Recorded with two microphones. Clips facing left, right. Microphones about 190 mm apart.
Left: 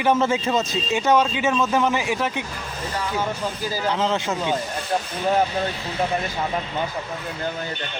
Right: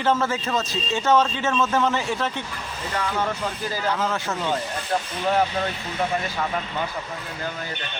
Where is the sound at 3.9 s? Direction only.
20° left (ahead or behind).